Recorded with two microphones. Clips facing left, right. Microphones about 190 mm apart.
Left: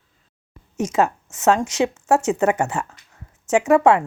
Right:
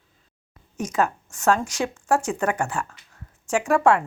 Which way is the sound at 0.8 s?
25° left (ahead or behind).